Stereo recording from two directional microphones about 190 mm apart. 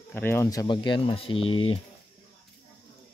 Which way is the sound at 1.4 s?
90° left.